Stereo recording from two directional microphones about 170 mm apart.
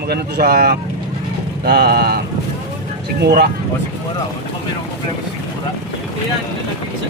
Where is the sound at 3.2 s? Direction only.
75° right (ahead or behind).